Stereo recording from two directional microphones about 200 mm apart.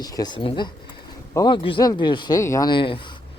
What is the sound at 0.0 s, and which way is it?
Speech, 20° left (ahead or behind).